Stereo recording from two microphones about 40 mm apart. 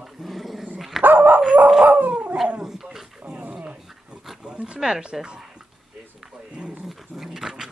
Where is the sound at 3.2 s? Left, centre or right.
Right.